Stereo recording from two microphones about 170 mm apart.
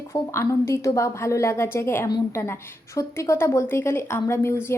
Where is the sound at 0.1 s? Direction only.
15° left (ahead or behind).